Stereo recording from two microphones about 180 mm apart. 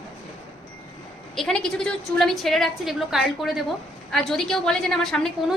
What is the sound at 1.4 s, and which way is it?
A woman's voice, 5° left (ahead or behind).